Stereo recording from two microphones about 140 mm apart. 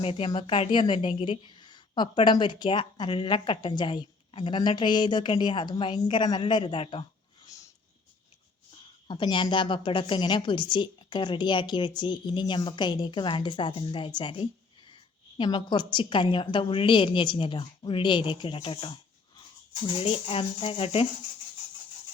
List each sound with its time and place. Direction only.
0.0 s a woman's voice: 40° left (ahead or behind)
9.0 s a woman's voice: 35° left (ahead or behind)